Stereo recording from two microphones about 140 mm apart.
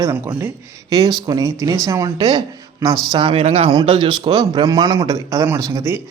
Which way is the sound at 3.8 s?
35° right (ahead or behind).